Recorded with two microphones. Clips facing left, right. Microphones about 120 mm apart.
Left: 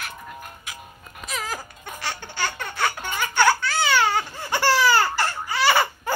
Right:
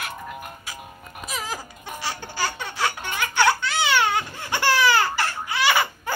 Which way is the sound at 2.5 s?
Centre (ahead or behind).